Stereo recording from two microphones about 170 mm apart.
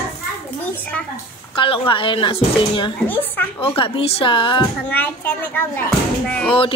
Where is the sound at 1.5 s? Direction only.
30° left (ahead or behind).